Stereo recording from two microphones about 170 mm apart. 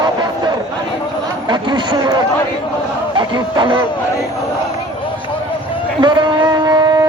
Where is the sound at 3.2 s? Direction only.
25° right (ahead or behind).